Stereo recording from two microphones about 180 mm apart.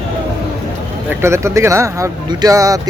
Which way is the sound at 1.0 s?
15° right (ahead or behind).